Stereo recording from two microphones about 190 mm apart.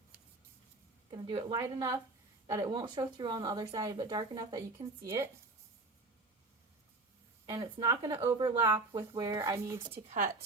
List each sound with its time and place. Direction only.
1.1 s speech: 25° right (ahead or behind)
7.4 s speech: 20° right (ahead or behind)
10.2 s a woman's voice: 45° right (ahead or behind)